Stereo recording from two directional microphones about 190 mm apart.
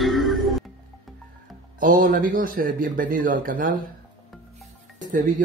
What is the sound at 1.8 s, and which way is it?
Speech, 45° right (ahead or behind).